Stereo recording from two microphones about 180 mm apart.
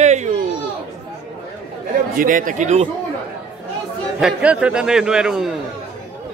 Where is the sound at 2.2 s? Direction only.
50° right (ahead or behind).